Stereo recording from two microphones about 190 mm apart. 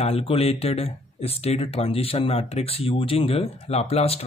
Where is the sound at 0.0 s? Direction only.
30° left (ahead or behind).